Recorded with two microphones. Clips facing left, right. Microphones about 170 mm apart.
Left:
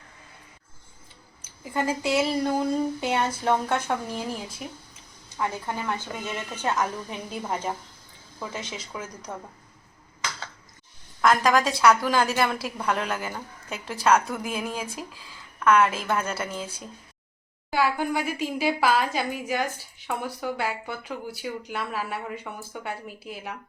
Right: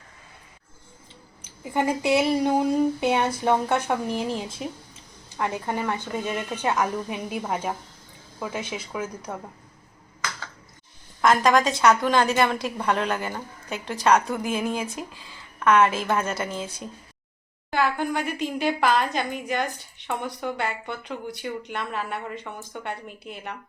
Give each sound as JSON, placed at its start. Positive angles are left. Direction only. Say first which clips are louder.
{"t": 1.4, "sound": "speech", "louder": "right 3 dB", "side_deg": -15}
{"t": 11.2, "sound": "a woman's voice", "louder": "right 2 dB", "side_deg": 0}
{"t": 17.7, "sound": "a woman's voice", "louder": "even", "side_deg": 10}